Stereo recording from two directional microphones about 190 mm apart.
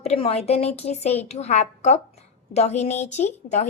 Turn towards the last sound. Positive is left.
turn(degrees=35)  # may be behind; listen again after turning